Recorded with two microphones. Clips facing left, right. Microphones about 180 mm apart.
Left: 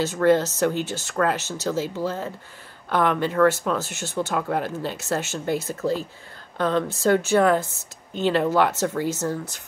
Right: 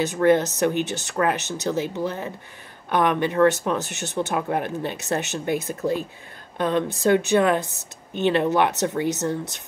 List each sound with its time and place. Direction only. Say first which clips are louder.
0.0 s speech: right 1 dB; 15° right (ahead or behind)
6.6 s speech: even; 20° right (ahead or behind)